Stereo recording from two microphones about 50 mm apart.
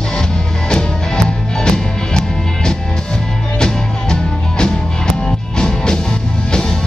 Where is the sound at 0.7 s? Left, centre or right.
Centre.